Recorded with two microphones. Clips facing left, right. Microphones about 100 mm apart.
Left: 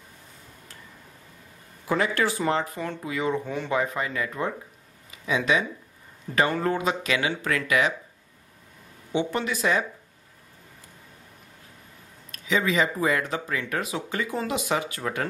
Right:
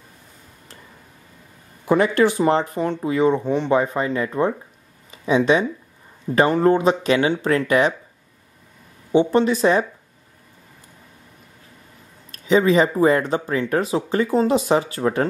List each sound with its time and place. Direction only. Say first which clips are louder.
1.9 s speech: right 8 dB; 20° right (ahead or behind)
9.1 s speech: right 10 dB; 30° right (ahead or behind)
12.3 s speech: right 9 dB; 35° right (ahead or behind)